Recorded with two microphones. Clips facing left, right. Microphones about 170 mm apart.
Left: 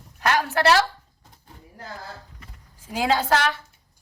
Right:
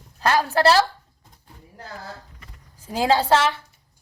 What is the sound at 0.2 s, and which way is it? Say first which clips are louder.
Speech: right 2 dB; 30° right (ahead or behind).